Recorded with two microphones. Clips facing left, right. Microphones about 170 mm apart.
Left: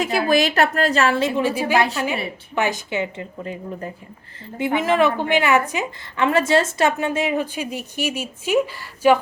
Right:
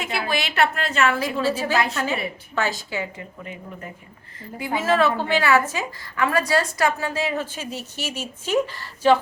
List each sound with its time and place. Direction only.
0.0 s a woman's voice: 40° left (ahead or behind)
1.4 s a woman's voice: 15° left (ahead or behind)
4.5 s a woman's voice: 25° left (ahead or behind)